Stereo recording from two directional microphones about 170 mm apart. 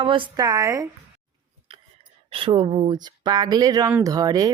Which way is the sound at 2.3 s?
30° right (ahead or behind).